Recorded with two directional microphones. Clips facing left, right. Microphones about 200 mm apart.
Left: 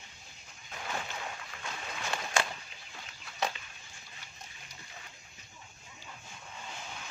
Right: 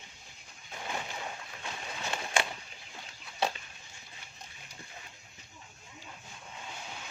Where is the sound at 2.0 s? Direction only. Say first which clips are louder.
Even; 20° right (ahead or behind).